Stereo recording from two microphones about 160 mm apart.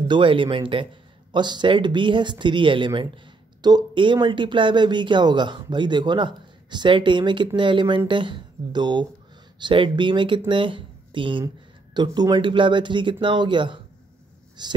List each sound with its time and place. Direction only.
0.1 s speech: 30° right (ahead or behind)